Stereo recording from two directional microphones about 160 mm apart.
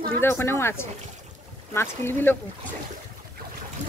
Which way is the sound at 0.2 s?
15° left (ahead or behind).